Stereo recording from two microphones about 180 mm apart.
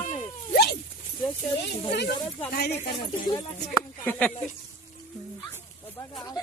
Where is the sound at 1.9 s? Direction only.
65° left (ahead or behind).